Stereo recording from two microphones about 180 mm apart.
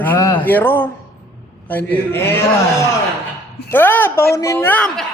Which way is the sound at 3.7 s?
10° left (ahead or behind).